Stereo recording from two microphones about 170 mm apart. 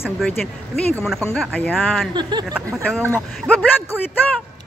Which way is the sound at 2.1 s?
25° right (ahead or behind).